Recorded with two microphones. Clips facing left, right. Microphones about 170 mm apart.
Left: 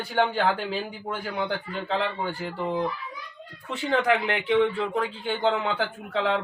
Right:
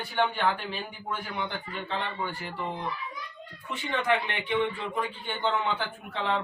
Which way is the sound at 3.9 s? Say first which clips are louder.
Left 5 dB; 90° left.